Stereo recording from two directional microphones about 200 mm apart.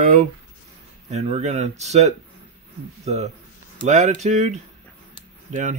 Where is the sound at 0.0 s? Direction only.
40° right (ahead or behind).